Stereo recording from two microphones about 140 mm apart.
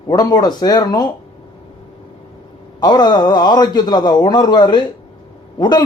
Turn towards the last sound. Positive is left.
turn(degrees=30)  # may be behind; listen again after turning